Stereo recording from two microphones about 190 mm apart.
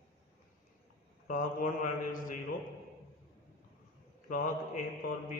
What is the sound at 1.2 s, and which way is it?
Speech, 45° left (ahead or behind).